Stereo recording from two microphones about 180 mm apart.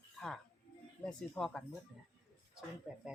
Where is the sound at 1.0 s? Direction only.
5° left (ahead or behind).